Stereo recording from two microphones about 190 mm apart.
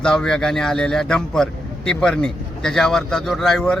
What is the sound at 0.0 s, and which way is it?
A man's voice, 5° left (ahead or behind).